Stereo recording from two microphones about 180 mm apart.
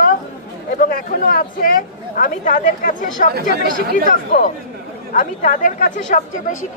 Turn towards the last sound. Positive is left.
turn(degrees=45)  # may be behind; listen again after turning